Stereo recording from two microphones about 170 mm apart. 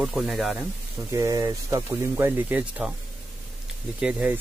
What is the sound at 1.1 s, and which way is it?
Speech, 20° right (ahead or behind).